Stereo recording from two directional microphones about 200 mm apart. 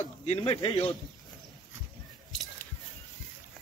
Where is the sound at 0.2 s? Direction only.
30° left (ahead or behind).